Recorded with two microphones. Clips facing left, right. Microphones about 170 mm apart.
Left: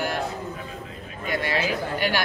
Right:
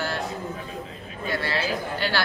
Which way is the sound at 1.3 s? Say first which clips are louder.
Left 2 dB; 15° left (ahead or behind).